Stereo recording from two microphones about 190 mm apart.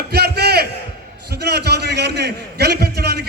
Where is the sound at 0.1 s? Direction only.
60° right (ahead or behind).